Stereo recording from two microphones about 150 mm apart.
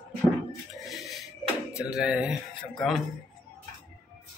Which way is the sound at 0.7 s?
Centre (ahead or behind).